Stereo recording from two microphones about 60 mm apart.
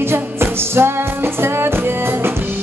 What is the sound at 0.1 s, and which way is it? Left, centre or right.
Music, right.